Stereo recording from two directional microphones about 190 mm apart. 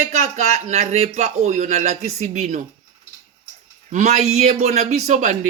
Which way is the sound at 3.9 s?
35° right (ahead or behind).